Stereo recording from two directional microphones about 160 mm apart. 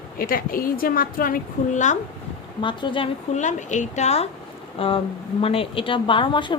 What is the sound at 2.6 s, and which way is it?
Speech, 30° left (ahead or behind).